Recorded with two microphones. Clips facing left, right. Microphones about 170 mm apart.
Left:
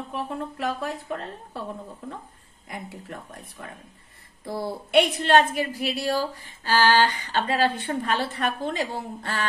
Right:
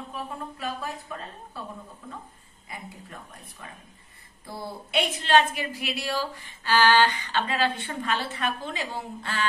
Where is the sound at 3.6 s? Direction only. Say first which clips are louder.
Left 4 dB; 55° left (ahead or behind).